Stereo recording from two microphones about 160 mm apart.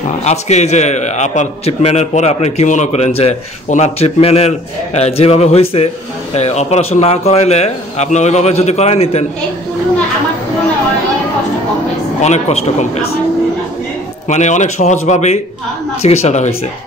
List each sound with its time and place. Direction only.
0.2 s a man's voice: 45° left (ahead or behind)
12.2 s a man's voice: 45° left (ahead or behind)
14.3 s a man's voice: 45° left (ahead or behind)